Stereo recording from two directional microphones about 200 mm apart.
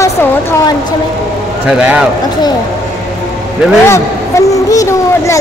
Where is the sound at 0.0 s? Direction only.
15° left (ahead or behind).